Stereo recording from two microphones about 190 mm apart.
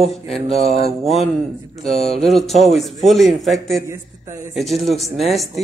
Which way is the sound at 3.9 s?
15° right (ahead or behind).